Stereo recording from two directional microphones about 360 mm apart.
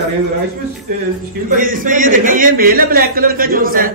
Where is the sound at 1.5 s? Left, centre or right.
Right.